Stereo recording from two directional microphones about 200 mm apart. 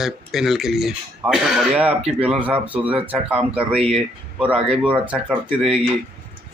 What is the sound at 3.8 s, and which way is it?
Speech, 30° right (ahead or behind).